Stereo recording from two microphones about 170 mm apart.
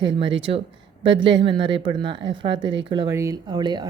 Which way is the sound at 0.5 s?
35° right (ahead or behind).